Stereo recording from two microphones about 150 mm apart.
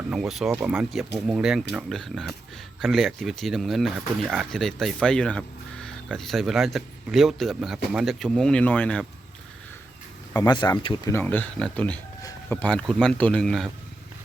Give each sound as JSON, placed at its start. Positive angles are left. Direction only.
{"t": 0.1, "sound": "speech", "side_deg": 0}
{"t": 0.9, "sound": "speech", "side_deg": 0}
{"t": 10.3, "sound": "speech", "side_deg": 25}
{"t": 11.2, "sound": "speech", "side_deg": 10}